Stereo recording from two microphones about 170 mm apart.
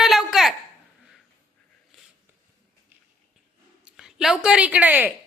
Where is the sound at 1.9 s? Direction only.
Centre (ahead or behind).